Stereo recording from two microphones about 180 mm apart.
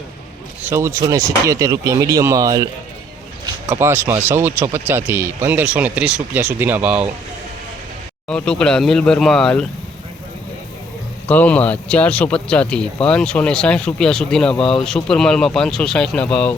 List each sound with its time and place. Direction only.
0.6 s speech: 15° right (ahead or behind)
3.7 s speech: 15° right (ahead or behind)
8.3 s speech: 5° left (ahead or behind)
11.3 s speech: 10° left (ahead or behind)